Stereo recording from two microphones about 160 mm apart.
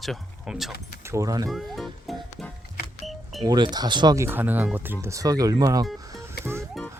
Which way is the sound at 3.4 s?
25° right (ahead or behind).